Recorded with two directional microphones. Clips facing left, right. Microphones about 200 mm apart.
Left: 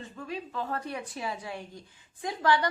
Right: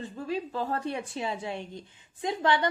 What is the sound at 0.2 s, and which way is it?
A woman's voice, 30° right (ahead or behind).